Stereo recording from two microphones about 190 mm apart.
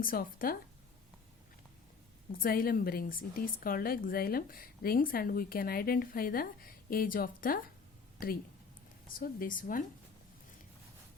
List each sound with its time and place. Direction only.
0.0 s a woman's voice: 50° left (ahead or behind)
2.3 s a woman's voice: 50° left (ahead or behind)
9.1 s a woman's voice: 50° left (ahead or behind)